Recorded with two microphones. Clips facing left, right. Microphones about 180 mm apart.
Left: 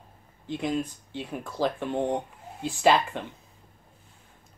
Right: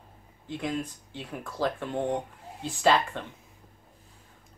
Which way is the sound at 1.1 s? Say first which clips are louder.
Left 4 dB; 20° left (ahead or behind).